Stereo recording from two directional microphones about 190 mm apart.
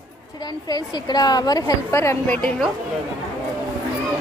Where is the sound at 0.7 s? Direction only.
20° left (ahead or behind).